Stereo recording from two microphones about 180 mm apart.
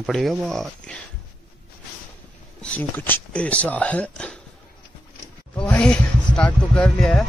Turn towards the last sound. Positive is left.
turn(degrees=5)  # may be behind; listen again after turning